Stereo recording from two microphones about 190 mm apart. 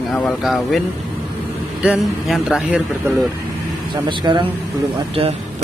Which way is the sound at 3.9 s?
25° right (ahead or behind).